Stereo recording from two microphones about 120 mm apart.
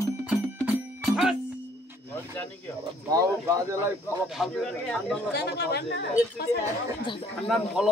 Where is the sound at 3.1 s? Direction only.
30° right (ahead or behind).